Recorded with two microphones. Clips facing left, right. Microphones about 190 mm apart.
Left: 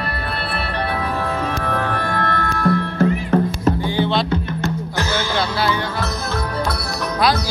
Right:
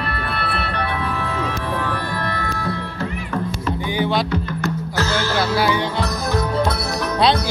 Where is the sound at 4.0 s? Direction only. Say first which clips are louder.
Left 1 dB; 10° right (ahead or behind).